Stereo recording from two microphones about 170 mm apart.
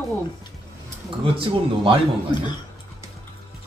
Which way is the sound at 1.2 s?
30° right (ahead or behind).